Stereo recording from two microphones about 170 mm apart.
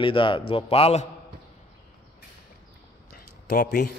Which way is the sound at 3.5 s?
65° left (ahead or behind).